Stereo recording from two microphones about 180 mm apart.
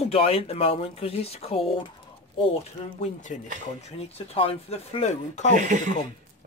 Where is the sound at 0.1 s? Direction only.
30° left (ahead or behind).